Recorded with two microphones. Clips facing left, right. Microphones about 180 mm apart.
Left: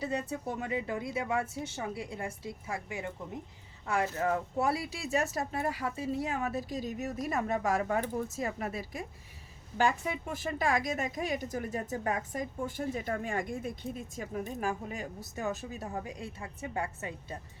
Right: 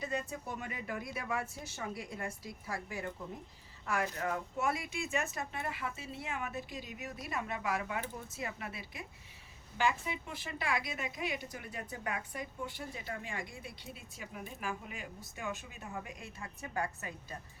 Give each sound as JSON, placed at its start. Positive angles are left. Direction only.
{"t": 0.0, "sound": "a woman's voice", "side_deg": 30}